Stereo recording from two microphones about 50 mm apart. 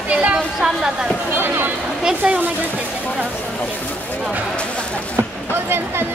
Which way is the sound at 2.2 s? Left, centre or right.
Centre.